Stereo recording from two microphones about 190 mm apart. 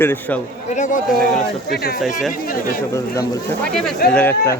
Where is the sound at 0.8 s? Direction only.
45° left (ahead or behind).